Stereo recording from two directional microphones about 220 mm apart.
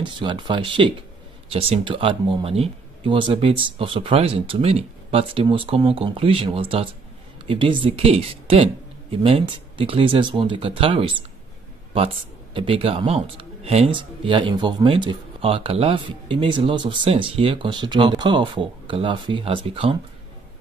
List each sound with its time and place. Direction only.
0.0 s speech: 20° right (ahead or behind)
12.5 s speech: 25° right (ahead or behind)